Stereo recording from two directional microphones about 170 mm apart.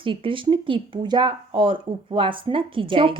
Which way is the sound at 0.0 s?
30° right (ahead or behind).